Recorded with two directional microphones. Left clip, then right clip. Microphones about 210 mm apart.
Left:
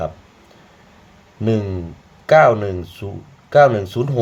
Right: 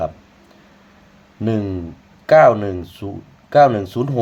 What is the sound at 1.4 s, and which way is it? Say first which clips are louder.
Speech: left 1 dB; 10° right (ahead or behind).